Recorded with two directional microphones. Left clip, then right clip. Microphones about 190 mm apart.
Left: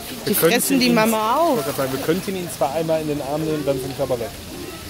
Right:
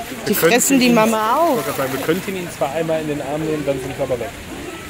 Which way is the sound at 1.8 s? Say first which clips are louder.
Right 2 dB; 20° left (ahead or behind).